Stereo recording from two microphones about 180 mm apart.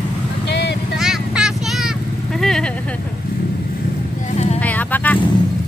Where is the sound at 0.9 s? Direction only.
5° right (ahead or behind).